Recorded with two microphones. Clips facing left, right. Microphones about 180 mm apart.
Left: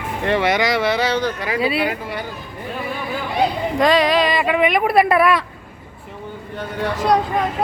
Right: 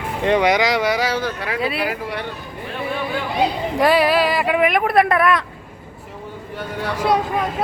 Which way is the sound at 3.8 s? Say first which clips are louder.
Even; 10° right (ahead or behind).